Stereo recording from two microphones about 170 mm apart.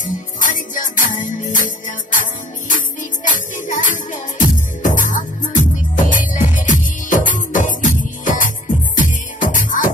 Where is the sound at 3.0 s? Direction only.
50° left (ahead or behind).